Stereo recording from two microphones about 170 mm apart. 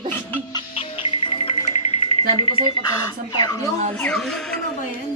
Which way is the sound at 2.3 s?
30° left (ahead or behind).